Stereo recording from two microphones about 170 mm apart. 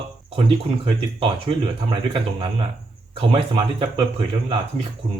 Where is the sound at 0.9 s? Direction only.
30° right (ahead or behind).